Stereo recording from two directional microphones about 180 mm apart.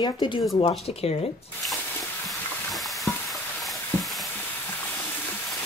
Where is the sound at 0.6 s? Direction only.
35° left (ahead or behind).